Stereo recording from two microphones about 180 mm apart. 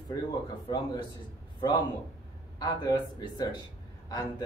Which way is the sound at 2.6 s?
20° left (ahead or behind).